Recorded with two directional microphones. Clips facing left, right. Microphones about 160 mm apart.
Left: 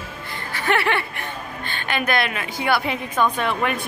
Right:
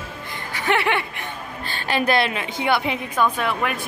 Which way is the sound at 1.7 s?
35° right (ahead or behind).